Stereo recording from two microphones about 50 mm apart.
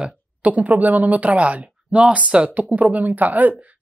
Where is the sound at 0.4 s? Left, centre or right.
Right.